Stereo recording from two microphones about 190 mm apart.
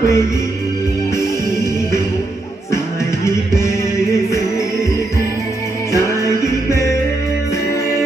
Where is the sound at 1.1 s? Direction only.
15° left (ahead or behind).